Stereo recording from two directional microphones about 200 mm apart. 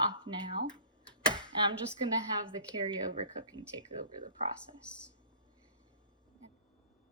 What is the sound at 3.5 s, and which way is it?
Speech, 75° right (ahead or behind).